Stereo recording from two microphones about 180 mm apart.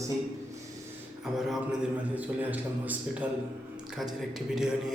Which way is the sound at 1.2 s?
5° right (ahead or behind).